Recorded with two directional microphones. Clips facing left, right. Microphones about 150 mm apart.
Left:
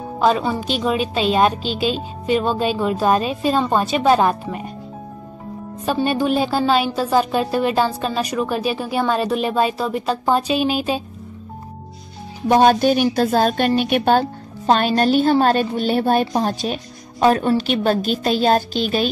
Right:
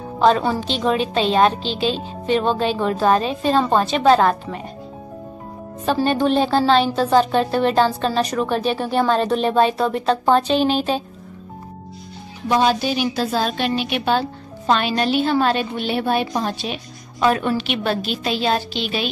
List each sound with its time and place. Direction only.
0.2 s a woman's voice: 5° left (ahead or behind)
6.0 s a woman's voice: 5° left (ahead or behind)
12.4 s a woman's voice: 50° left (ahead or behind)